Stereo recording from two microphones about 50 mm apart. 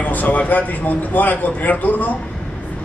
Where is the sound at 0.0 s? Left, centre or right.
Left.